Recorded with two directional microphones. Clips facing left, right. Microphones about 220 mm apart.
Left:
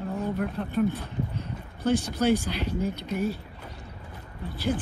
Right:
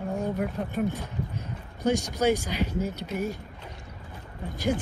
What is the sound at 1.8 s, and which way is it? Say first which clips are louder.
Speech: even; 15° right (ahead or behind).